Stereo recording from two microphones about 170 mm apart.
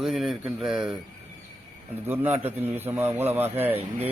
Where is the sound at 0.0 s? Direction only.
Centre (ahead or behind).